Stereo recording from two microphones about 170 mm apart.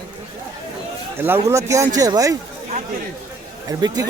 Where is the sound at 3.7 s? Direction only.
25° right (ahead or behind).